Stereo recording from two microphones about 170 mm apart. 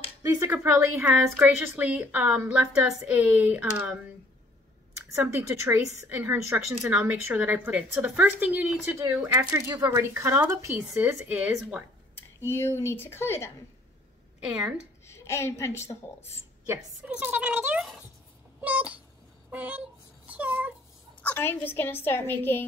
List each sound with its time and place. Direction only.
0.2 s speech: 20° right (ahead or behind)
5.1 s speech: 15° right (ahead or behind)
12.4 s a woman's voice: 15° left (ahead or behind)
15.0 s a woman's voice: 15° left (ahead or behind)
16.6 s a woman's voice: 15° right (ahead or behind)
18.6 s cat: 10° right (ahead or behind)
19.5 s speech: 10° right (ahead or behind)
20.2 s cat: 10° right (ahead or behind)
21.2 s a woman's voice: 10° left (ahead or behind)